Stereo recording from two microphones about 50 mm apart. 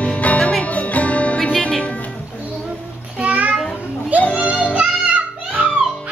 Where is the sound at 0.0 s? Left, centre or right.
Left.